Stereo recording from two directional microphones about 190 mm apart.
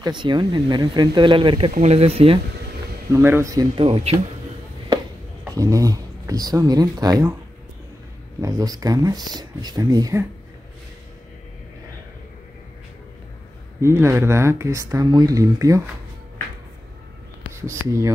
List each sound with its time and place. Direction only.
0.0 s speech: 25° right (ahead or behind)
3.1 s speech: 10° right (ahead or behind)
3.7 s speech: 30° right (ahead or behind)
5.5 s speech: 20° right (ahead or behind)
8.4 s speech: 20° right (ahead or behind)
13.7 s speech: 15° right (ahead or behind)
17.6 s speech: 15° right (ahead or behind)